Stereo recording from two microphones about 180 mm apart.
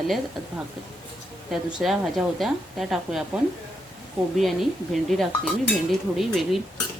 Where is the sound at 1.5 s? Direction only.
Centre (ahead or behind).